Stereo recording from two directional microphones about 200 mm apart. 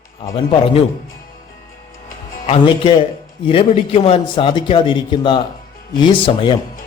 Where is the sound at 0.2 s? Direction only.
25° left (ahead or behind).